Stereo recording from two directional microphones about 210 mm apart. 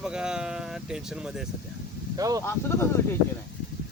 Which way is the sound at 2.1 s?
15° right (ahead or behind).